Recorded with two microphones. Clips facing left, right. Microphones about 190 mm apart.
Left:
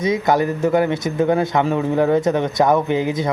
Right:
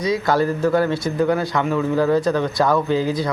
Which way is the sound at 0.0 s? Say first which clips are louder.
Left 1 dB; 20° left (ahead or behind).